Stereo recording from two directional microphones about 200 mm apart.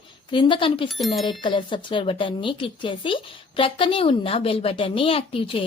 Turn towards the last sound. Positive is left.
turn(degrees=25)  # may be behind; listen again after turning